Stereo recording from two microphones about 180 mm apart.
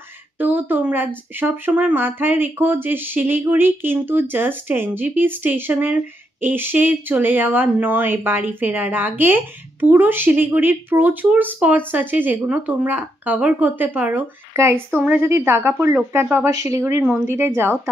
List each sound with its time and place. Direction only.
0.4 s speech: 10° right (ahead or behind)